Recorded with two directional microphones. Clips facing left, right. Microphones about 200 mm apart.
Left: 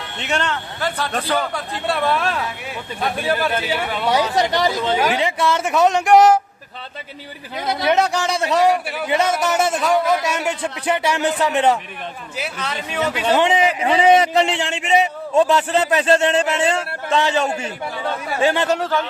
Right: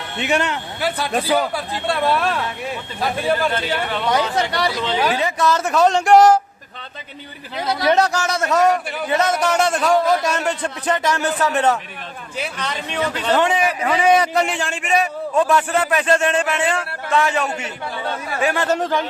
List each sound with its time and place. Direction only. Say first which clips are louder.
0.2 s a man's voice: right 3 dB; 10° right (ahead or behind); by 5.8 s 20° left (ahead or behind)
6.0 s speech: right 1 dB; 5° left (ahead or behind)
7.9 s a man's voice: even; 15° left (ahead or behind)
18.8 s a man's voice: even; 15° right (ahead or behind)